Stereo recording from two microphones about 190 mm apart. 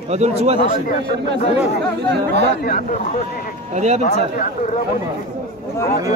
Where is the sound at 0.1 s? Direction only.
35° right (ahead or behind).